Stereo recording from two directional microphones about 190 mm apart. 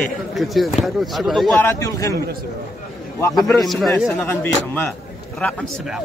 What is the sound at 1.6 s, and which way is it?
Speech, 15° left (ahead or behind).